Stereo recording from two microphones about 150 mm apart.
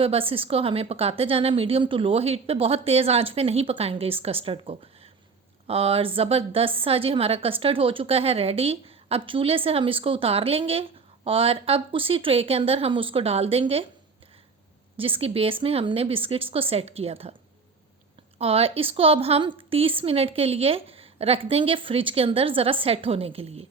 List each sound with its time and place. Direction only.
0.0 s a woman's voice: 40° right (ahead or behind)
14.9 s a woman's voice: 35° right (ahead or behind)
18.3 s a woman's voice: 40° right (ahead or behind)